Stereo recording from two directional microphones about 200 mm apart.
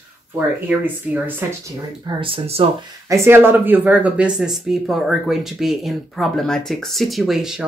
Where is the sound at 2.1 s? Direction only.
25° right (ahead or behind).